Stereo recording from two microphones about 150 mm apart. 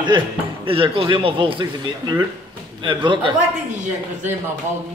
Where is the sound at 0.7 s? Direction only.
35° right (ahead or behind).